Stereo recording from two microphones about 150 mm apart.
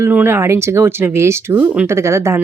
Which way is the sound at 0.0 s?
15° right (ahead or behind).